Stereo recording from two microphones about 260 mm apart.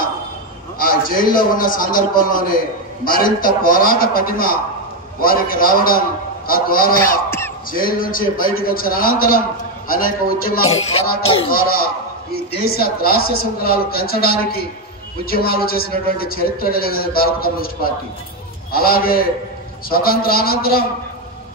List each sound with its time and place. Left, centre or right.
0.7 s a man's voice: left
7.2 s a sound: centre
7.7 s a man's voice: left
11.2 s speech: left
11.5 s a man's voice: left
18.7 s a man's voice: left